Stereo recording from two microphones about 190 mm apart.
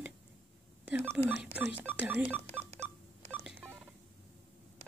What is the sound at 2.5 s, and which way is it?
Telephone dialing, 35° right (ahead or behind).